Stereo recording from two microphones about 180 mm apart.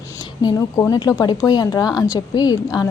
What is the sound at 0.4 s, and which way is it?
A woman's voice, 20° left (ahead or behind).